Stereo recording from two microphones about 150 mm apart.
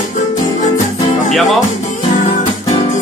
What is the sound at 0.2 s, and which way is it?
Music, 55° left (ahead or behind).